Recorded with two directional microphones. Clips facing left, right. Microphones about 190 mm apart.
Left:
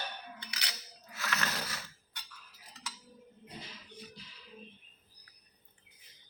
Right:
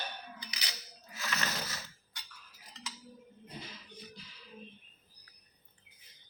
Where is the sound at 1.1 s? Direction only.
Centre (ahead or behind).